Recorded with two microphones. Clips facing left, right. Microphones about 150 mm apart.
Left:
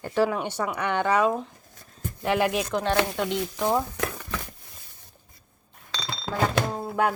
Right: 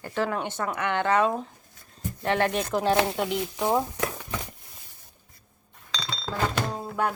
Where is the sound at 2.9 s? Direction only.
25° right (ahead or behind).